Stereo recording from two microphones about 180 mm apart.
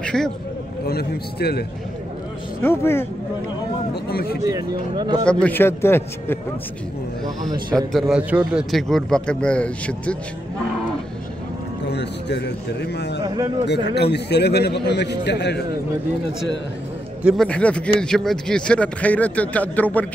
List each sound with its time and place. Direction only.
0.0 s a man's voice: 5° left (ahead or behind)
0.8 s a man's voice: 60° left (ahead or behind)
2.6 s speech: 15° left (ahead or behind)
3.9 s a man's voice: 60° left (ahead or behind)
4.5 s speech: 20° right (ahead or behind)
5.2 s speech: 5° left (ahead or behind)
7.7 s a man's voice: 5° right (ahead or behind)
11.9 s a man's voice: 70° left (ahead or behind)
17.2 s a man's voice: 5° right (ahead or behind)
17.5 s speech: 5° left (ahead or behind)